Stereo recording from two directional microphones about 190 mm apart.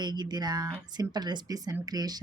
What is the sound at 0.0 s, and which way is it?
Speech, 20° right (ahead or behind).